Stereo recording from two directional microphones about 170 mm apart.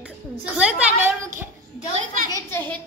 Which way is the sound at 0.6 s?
10° right (ahead or behind).